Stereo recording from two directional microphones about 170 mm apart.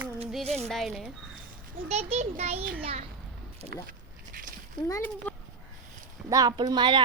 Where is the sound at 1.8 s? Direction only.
35° right (ahead or behind).